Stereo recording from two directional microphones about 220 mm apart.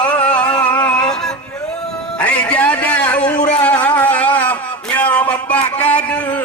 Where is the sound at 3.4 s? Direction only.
30° left (ahead or behind).